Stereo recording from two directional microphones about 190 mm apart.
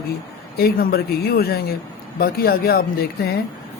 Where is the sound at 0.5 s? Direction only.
55° left (ahead or behind).